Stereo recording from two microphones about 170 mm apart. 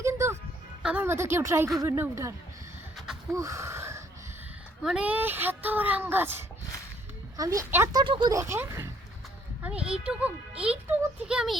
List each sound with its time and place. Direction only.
0.0 s music: 15° right (ahead or behind)
0.8 s a child's voice: 5° right (ahead or behind)
3.3 s wheeze: 20° right (ahead or behind)
4.8 s a child's voice: 5° right (ahead or behind)
8.0 s speech: 30° right (ahead or behind)
9.8 s a child's voice: 5° right (ahead or behind)